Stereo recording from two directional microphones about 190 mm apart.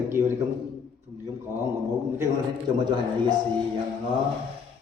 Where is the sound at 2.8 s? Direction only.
25° right (ahead or behind).